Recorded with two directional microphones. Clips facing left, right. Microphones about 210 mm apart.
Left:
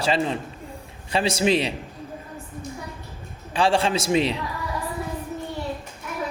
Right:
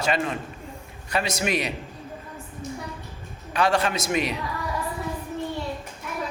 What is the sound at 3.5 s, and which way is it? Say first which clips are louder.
Speech: left 2 dB; 30° left (ahead or behind).